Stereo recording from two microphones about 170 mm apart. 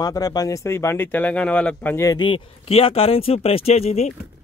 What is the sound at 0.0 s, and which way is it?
Speech, 20° left (ahead or behind).